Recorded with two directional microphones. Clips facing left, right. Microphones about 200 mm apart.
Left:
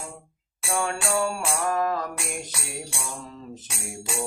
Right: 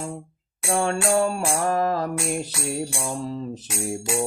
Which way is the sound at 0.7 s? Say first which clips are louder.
Right 5 dB; 35° right (ahead or behind).